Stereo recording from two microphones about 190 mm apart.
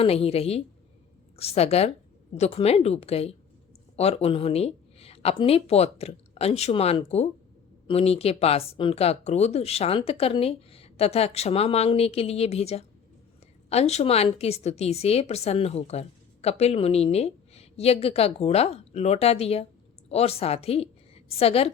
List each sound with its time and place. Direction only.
0.0 s a woman's voice: 30° left (ahead or behind)